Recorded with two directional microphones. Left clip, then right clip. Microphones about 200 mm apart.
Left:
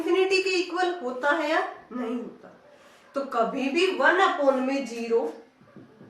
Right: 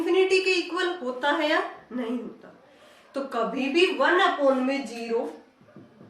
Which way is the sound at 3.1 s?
15° right (ahead or behind).